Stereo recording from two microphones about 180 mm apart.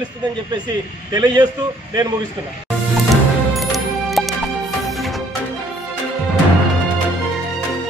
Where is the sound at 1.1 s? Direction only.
25° right (ahead or behind).